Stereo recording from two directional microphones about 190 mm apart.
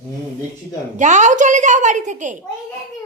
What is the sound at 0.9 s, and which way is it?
A woman's voice, 40° right (ahead or behind).